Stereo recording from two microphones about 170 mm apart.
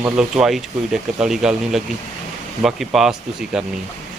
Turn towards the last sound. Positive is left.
turn(degrees=-5)  # may be behind; listen again after turning